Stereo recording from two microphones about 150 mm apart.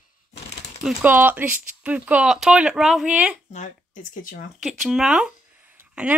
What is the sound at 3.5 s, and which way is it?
Speech, 55° left (ahead or behind).